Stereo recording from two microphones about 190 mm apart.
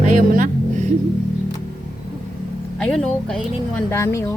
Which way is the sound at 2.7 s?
5° left (ahead or behind).